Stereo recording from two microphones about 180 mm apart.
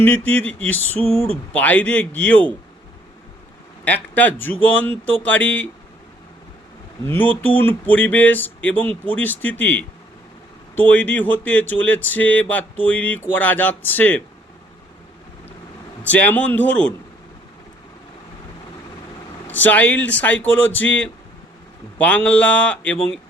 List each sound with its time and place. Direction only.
0.0 s speech: 10° left (ahead or behind)
3.8 s speech: 10° left (ahead or behind)
7.0 s speech: 10° left (ahead or behind)
16.0 s speech: 10° left (ahead or behind)
19.5 s speech: 10° left (ahead or behind)